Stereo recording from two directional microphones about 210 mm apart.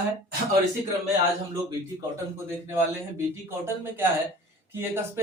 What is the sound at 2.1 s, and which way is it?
Speech, 10° right (ahead or behind).